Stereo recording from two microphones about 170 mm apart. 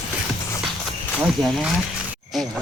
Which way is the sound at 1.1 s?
5° right (ahead or behind).